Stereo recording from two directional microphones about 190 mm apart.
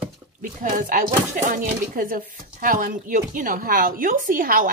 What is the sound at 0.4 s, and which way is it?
Speech, 45° right (ahead or behind).